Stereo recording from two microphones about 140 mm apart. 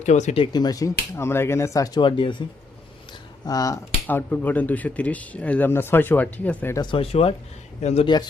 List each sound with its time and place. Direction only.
0.0 s speech: 55° left (ahead or behind)
0.5 s speech: 30° left (ahead or behind)
3.4 s speech: 25° left (ahead or behind)
4.0 s speech: 10° left (ahead or behind)
6.9 s speech: 45° left (ahead or behind)
8.0 s speech: 30° left (ahead or behind)